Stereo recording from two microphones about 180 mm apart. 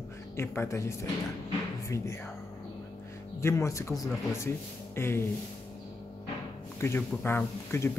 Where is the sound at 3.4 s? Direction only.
15° left (ahead or behind).